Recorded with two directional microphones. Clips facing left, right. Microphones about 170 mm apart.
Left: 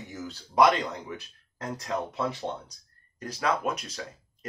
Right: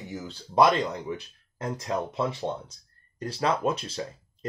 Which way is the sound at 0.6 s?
25° right (ahead or behind).